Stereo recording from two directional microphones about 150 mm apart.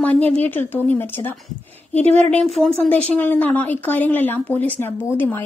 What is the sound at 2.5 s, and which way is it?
A woman's voice, 5° left (ahead or behind).